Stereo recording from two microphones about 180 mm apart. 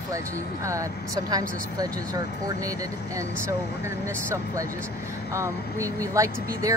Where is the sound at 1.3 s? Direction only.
20° right (ahead or behind).